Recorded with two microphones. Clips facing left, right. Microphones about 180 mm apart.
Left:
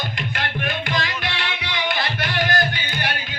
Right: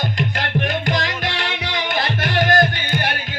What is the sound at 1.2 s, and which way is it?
Music, 45° right (ahead or behind).